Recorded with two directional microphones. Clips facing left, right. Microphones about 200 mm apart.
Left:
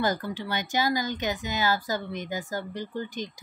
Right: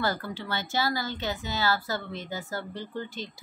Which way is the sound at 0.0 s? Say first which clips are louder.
Left 3 dB; 20° left (ahead or behind).